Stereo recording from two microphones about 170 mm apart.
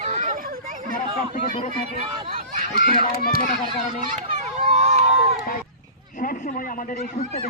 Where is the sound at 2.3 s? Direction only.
50° right (ahead or behind).